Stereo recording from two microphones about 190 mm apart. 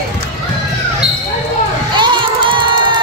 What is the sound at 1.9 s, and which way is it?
Music, 25° right (ahead or behind).